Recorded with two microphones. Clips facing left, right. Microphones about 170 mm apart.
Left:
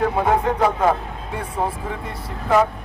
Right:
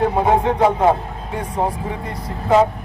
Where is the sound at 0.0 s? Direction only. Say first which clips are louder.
Right 3 dB; 25° right (ahead or behind).